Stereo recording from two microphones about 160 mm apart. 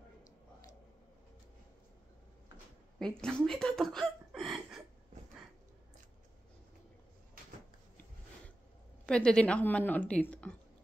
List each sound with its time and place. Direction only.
3.0 s speech: 5° left (ahead or behind)
9.0 s a woman's voice: 5° left (ahead or behind)